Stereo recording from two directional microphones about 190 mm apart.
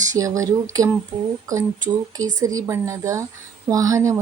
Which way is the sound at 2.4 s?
15° right (ahead or behind).